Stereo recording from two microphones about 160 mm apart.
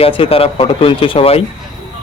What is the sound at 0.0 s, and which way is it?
A man's voice, 35° left (ahead or behind).